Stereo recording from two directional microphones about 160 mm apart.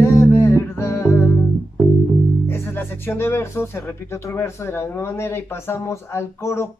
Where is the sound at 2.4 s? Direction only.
15° left (ahead or behind).